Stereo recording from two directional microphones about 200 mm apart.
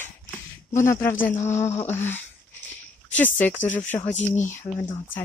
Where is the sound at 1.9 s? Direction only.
10° left (ahead or behind).